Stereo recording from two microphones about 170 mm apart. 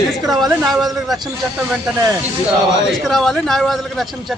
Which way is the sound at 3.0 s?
Centre (ahead or behind).